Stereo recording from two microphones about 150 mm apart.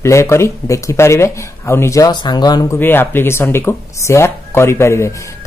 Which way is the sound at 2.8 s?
15° left (ahead or behind).